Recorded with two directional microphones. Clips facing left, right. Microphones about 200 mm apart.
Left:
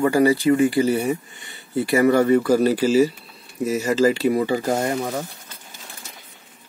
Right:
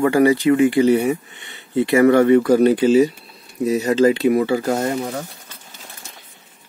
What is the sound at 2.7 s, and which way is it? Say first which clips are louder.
Speech: right 3 dB; 5° left (ahead or behind).